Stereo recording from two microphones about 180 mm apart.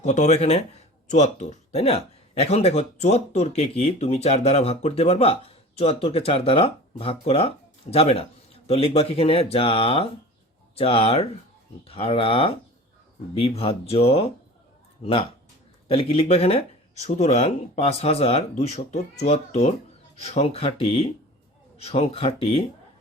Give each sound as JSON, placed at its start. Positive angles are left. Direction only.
{"t": 0.0, "sound": "a man's voice", "side_deg": 40}